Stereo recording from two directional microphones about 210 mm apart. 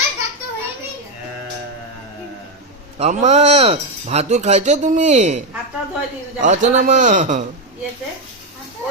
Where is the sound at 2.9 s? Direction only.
35° right (ahead or behind).